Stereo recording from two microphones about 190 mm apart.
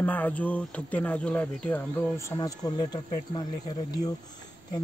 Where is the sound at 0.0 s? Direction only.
10° left (ahead or behind).